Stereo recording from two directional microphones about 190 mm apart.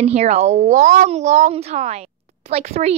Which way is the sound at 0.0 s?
35° right (ahead or behind).